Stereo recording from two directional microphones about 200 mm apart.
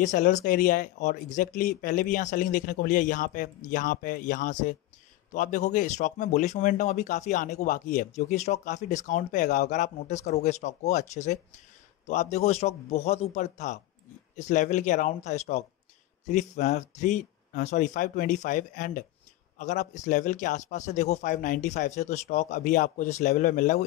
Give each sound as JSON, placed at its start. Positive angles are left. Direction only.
{"t": 0.0, "sound": "speech", "side_deg": 40}